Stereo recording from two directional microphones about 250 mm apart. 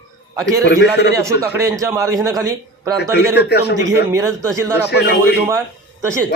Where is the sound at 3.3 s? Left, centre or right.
Left.